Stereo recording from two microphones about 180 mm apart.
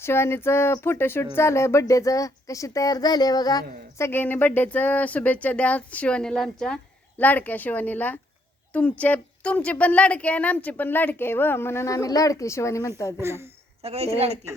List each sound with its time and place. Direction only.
0.0 s speech: 15° left (ahead or behind)
13.1 s speech: 15° right (ahead or behind)
13.8 s a woman's voice: 35° right (ahead or behind)